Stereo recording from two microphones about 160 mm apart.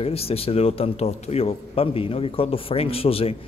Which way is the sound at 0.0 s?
40° left (ahead or behind).